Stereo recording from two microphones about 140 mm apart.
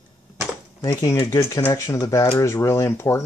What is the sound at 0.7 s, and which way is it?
Speech, 25° left (ahead or behind).